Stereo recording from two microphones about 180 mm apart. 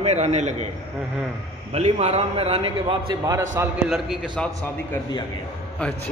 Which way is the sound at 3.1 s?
20° right (ahead or behind).